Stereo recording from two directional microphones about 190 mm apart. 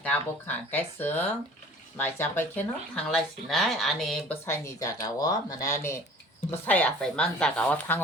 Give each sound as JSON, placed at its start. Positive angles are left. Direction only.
{"t": 0.0, "sound": "speech", "side_deg": 10}
{"t": 4.4, "sound": "speech", "side_deg": 15}
{"t": 6.5, "sound": "speech", "side_deg": 10}